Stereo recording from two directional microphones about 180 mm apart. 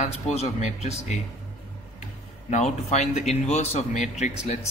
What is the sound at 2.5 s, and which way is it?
Speech, 40° left (ahead or behind).